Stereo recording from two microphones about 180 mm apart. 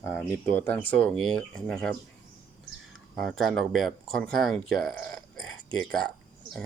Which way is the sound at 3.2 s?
Centre (ahead or behind).